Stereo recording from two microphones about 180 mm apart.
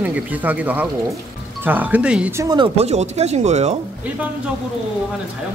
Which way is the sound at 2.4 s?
25° right (ahead or behind).